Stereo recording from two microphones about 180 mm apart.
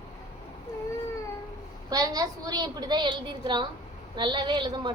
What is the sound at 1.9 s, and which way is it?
A woman's voice, 20° right (ahead or behind).